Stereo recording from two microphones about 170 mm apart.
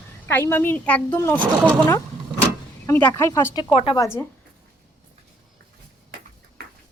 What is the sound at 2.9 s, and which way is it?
Speech, 10° left (ahead or behind).